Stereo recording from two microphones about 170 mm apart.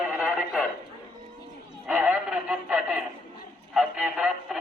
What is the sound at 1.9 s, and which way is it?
Radio, 10° right (ahead or behind).